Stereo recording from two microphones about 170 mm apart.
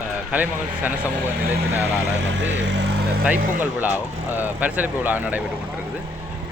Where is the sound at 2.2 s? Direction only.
90° right.